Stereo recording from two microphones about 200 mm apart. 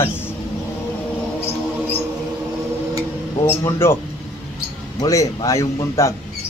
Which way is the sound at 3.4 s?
10° left (ahead or behind).